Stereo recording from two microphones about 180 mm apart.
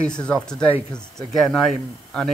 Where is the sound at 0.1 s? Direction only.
5° left (ahead or behind).